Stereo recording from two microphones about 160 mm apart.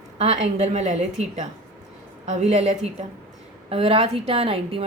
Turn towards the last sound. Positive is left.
turn(degrees=-35)  # may be behind; listen again after turning